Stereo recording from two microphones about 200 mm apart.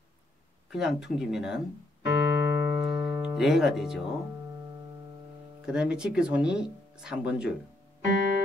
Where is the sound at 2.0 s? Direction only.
10° right (ahead or behind).